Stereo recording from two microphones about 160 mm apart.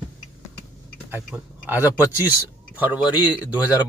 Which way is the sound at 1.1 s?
10° right (ahead or behind).